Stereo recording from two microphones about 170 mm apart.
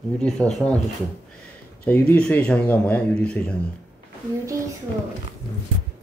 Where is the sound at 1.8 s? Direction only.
10° left (ahead or behind).